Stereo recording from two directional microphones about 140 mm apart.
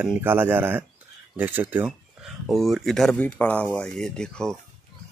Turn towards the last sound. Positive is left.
turn(degrees=5)  # may be behind; listen again after turning